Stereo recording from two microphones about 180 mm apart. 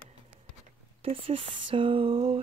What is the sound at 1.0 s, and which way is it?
Speech, 30° right (ahead or behind).